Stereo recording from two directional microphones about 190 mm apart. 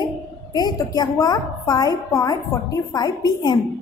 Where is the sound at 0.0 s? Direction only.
20° left (ahead or behind).